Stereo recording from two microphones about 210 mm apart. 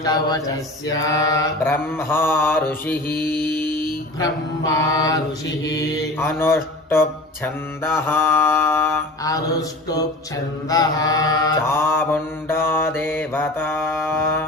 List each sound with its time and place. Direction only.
0.0 s mantra: 15° left (ahead or behind)
3.2 s mantra: 45° left (ahead or behind)
3.4 s music: 10° left (ahead or behind)
3.7 s a sound: 20° right (ahead or behind)
4.2 s mantra: 15° left (ahead or behind)
10.7 s mantra: 15° left (ahead or behind)